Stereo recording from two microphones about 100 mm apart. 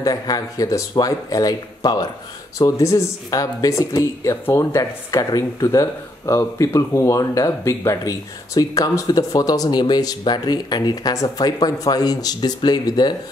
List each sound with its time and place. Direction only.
0.0 s speech: 40° left (ahead or behind)